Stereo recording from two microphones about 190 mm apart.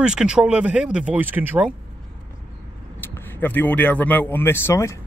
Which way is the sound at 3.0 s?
10° left (ahead or behind).